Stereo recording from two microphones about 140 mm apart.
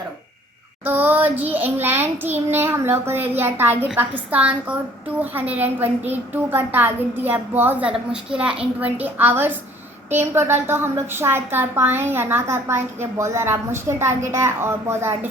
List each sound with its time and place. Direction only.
0.9 s a woman's voice: 15° right (ahead or behind)